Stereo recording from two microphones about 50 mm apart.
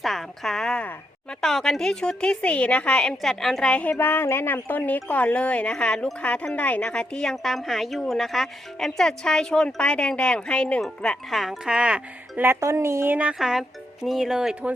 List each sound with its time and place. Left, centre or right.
0.0 s a sound: centre
1.3 s speech: centre
3.2 s a woman's voice: centre
3.6 s speech: centre
3.9 s speech: left
4.7 s speech: left
6.9 s speech: centre
11.3 s a woman's voice: centre
11.6 s speech: centre
12.5 s a woman's voice: right
13.4 s speech: centre